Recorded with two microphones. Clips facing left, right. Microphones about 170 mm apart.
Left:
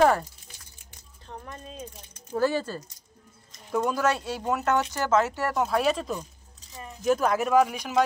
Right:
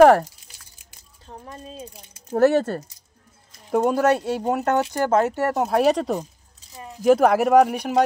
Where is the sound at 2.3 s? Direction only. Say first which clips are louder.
Right 8 dB; 65° right (ahead or behind).